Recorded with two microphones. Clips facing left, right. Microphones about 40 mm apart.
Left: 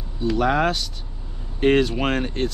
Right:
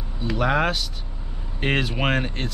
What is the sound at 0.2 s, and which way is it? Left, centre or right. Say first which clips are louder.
Speech: left 2 dB; centre.